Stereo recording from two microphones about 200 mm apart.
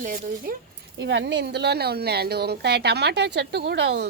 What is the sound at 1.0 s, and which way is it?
A woman's voice, 60° right (ahead or behind).